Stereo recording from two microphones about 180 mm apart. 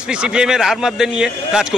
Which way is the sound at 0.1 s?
5° right (ahead or behind).